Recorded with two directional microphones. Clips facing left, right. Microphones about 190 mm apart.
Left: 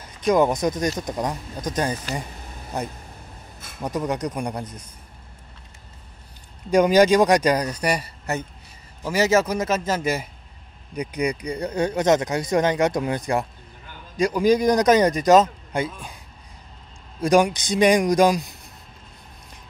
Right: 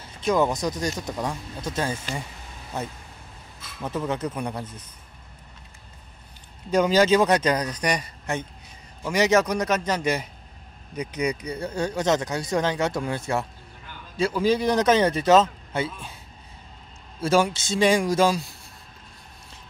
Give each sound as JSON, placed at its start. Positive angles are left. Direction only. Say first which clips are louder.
{"t": 0.3, "sound": "speech", "louder": "left 4 dB", "side_deg": 20}
{"t": 3.8, "sound": "speech", "louder": "left 2 dB", "side_deg": 15}
{"t": 6.7, "sound": "speech", "louder": "left 3 dB", "side_deg": 15}
{"t": 11.6, "sound": "speech", "louder": "left 4 dB", "side_deg": 20}
{"t": 17.2, "sound": "speech", "louder": "left 3 dB", "side_deg": 15}